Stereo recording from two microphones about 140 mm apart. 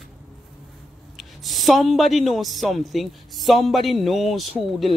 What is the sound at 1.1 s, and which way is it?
Speech, centre (ahead or behind).